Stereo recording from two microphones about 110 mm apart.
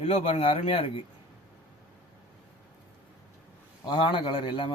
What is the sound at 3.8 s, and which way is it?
Speech, 45° left (ahead or behind).